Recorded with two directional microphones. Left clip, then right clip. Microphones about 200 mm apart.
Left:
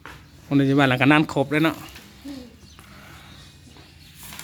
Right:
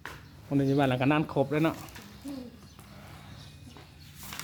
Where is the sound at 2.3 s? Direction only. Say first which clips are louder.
Left 3 dB; 5° left (ahead or behind).